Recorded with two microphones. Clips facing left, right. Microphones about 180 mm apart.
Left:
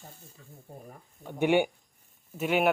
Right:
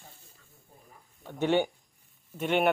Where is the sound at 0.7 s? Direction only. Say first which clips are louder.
Left 12 dB; 70° left (ahead or behind).